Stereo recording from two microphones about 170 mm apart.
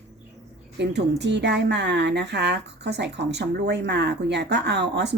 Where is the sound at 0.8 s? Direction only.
90° right.